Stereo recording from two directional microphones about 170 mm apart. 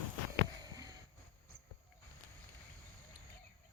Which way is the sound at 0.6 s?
20° right (ahead or behind).